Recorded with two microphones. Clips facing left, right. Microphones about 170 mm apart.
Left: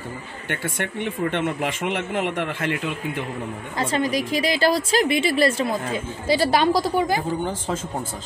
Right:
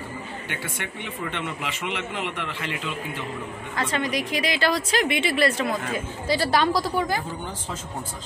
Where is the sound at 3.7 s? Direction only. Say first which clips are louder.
Left 3 dB; 30° left (ahead or behind).